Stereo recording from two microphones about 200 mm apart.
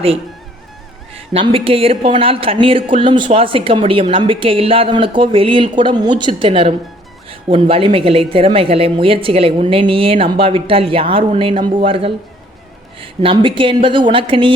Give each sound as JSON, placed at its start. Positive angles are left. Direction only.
{"t": 1.3, "sound": "speech", "side_deg": -25}